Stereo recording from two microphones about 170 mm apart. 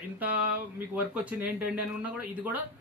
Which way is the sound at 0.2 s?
10° right (ahead or behind).